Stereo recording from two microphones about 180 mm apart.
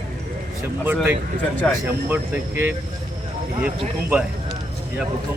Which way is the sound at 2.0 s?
10° right (ahead or behind).